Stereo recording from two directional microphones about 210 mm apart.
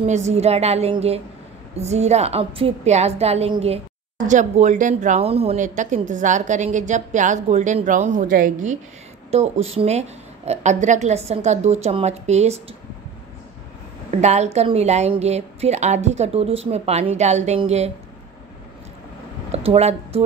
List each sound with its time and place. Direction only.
0.0 s a woman's voice: 35° right (ahead or behind)
14.1 s speech: 30° right (ahead or behind)
19.5 s a woman's voice: 30° right (ahead or behind)